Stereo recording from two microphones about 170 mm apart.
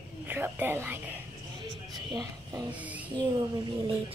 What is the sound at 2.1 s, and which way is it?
Speech, 25° right (ahead or behind).